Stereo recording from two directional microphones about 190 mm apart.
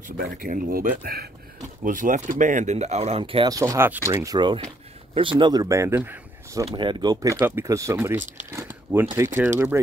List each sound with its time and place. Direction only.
0.2 s speech: 50° right (ahead or behind); by 9.8 s 10° right (ahead or behind)